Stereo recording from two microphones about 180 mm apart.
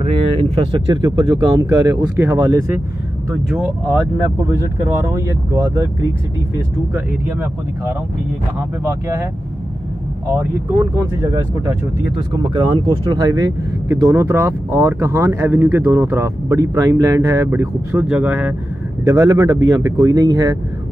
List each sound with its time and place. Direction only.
0.4 s speech: 25° right (ahead or behind); by 4.0 s 10° right (ahead or behind)
5.0 s speech: 20° right (ahead or behind)
6.9 s speech: 10° right (ahead or behind)
10.3 s speech: 10° right (ahead or behind)
12.2 s speech: 25° right (ahead or behind); by 18.5 s 5° right (ahead or behind)
19.0 s speech: 20° right (ahead or behind)